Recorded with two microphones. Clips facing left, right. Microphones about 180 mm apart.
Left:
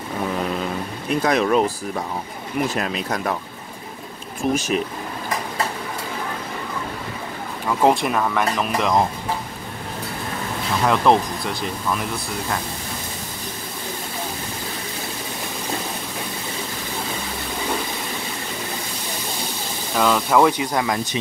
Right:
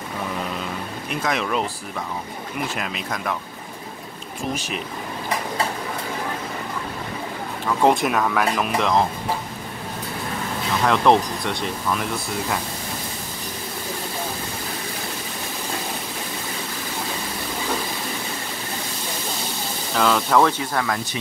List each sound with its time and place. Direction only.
1.2 s speech: 40° left (ahead or behind)
2.8 s speech: 35° left (ahead or behind)
7.8 s speech: centre (ahead or behind)
10.8 s speech: centre (ahead or behind)
20.0 s speech: 5° left (ahead or behind); by 21.2 s 20° left (ahead or behind)